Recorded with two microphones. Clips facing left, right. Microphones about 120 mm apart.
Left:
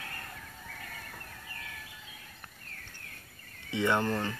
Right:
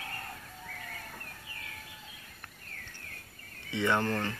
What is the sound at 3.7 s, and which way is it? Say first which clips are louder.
Speech: left 1 dB; 15° left (ahead or behind).